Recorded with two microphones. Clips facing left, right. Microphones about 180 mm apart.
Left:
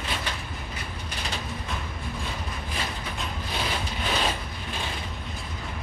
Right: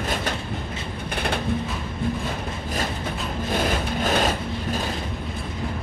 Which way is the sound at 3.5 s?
50° right (ahead or behind).